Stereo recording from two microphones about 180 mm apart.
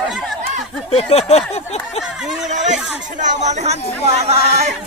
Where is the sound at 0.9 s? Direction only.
35° left (ahead or behind).